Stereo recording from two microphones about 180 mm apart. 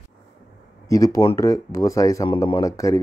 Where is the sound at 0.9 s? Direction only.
20° left (ahead or behind).